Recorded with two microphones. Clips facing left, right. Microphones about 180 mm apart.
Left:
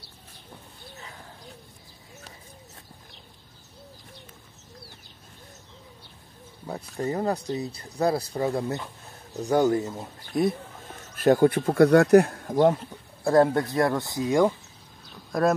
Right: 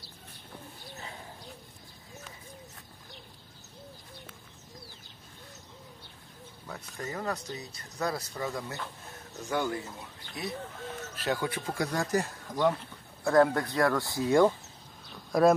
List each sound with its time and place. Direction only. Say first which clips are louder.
6.6 s speech: left 10 dB; 30° left (ahead or behind); by 12.7 s 50° left (ahead or behind)
13.2 s speech: left 4 dB; 30° left (ahead or behind)
15.0 s a sound: right 1 dB; centre (ahead or behind)